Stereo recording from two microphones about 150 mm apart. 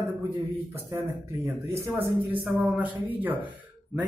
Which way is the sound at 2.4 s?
10° right (ahead or behind).